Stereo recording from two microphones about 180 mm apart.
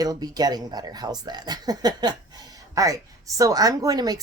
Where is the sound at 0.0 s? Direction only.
20° right (ahead or behind).